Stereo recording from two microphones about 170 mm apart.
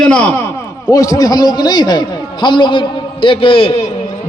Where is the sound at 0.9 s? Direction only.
20° left (ahead or behind).